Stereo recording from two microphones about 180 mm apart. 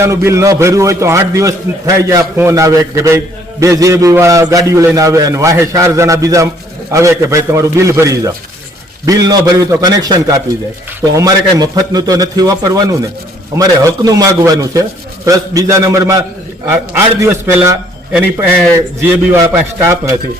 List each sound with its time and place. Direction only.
0.0 s a man's voice: 15° right (ahead or behind)